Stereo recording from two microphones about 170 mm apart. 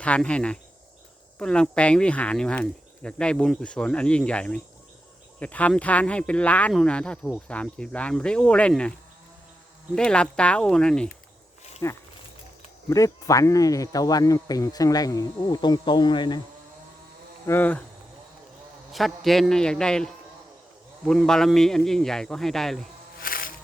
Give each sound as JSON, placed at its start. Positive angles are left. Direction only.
{"t": 0.0, "sound": "speech", "side_deg": 5}
{"t": 11.8, "sound": "speech", "side_deg": 15}
{"t": 17.4, "sound": "insect", "side_deg": 10}
{"t": 18.9, "sound": "speech", "side_deg": 0}
{"t": 21.1, "sound": "speech", "side_deg": 5}
{"t": 23.2, "sound": "music", "side_deg": 55}